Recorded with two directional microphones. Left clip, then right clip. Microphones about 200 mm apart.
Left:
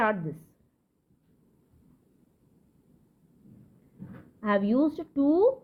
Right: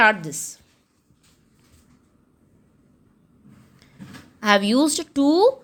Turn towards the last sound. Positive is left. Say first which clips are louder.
# right 6 dB
turn(degrees=-30)  # may be behind; listen again after turning